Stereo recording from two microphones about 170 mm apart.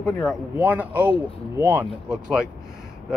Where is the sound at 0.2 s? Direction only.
5° right (ahead or behind).